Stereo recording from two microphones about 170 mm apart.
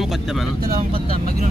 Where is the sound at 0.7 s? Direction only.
60° right (ahead or behind).